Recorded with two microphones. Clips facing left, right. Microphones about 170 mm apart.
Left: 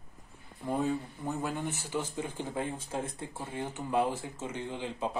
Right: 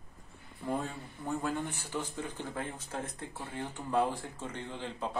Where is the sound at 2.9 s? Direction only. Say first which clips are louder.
Left 3 dB; 20° left (ahead or behind).